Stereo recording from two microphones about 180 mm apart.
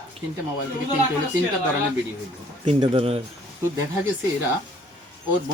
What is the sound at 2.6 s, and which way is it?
Speech, 30° right (ahead or behind).